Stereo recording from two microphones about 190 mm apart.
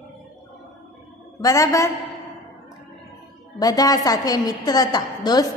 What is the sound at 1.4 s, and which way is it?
Speech, 15° left (ahead or behind).